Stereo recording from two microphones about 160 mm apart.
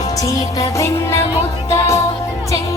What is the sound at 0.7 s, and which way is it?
Music, 15° left (ahead or behind).